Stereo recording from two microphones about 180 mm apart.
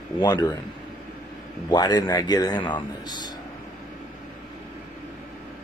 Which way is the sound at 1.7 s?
25° left (ahead or behind).